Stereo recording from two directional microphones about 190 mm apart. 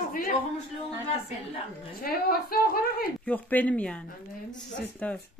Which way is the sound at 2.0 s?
55° left (ahead or behind).